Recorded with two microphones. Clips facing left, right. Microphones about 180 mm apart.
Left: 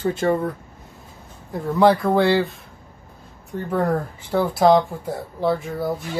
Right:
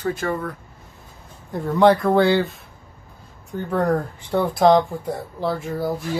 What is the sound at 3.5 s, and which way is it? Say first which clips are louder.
Speech: right 1 dB; 5° left (ahead or behind).